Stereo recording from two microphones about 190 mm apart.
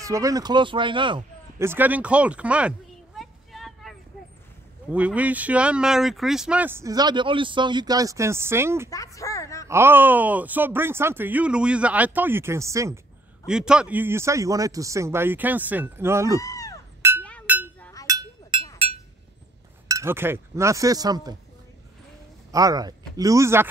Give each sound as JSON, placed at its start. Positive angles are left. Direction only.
{"t": 0.0, "sound": "speech", "side_deg": -15}
{"t": 1.6, "sound": "speech", "side_deg": -10}
{"t": 3.2, "sound": "vehicle", "side_deg": 0}
{"t": 4.9, "sound": "speech", "side_deg": -5}
{"t": 8.9, "sound": "a sound", "side_deg": 15}
{"t": 9.7, "sound": "speech", "side_deg": -10}
{"t": 13.5, "sound": "speech", "side_deg": -5}
{"t": 16.3, "sound": "a sound", "side_deg": 20}
{"t": 17.2, "sound": "cowbell", "side_deg": 5}
{"t": 17.7, "sound": "a sound", "side_deg": 10}
{"t": 18.0, "sound": "a sound", "side_deg": -15}
{"t": 19.9, "sound": "speech", "side_deg": -15}
{"t": 22.5, "sound": "speech", "side_deg": -20}